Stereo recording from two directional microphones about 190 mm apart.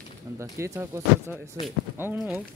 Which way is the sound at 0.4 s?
15° right (ahead or behind).